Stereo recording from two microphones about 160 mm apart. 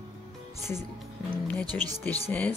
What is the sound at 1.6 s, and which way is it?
Speech, 25° right (ahead or behind).